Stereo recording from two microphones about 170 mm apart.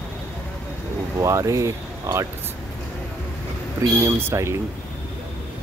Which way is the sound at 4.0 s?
15° right (ahead or behind).